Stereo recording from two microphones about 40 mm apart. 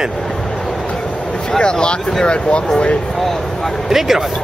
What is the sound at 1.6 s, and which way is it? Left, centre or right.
Speech, left.